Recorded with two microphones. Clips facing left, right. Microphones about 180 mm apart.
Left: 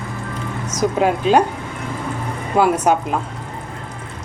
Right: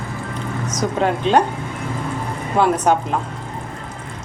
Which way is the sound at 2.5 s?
10° left (ahead or behind).